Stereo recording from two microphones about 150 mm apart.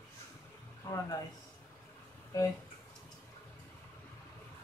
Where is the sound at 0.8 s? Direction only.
20° left (ahead or behind).